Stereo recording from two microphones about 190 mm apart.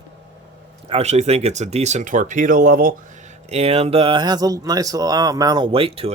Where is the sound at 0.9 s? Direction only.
35° right (ahead or behind).